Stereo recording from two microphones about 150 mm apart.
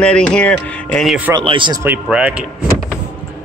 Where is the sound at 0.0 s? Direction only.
5° left (ahead or behind).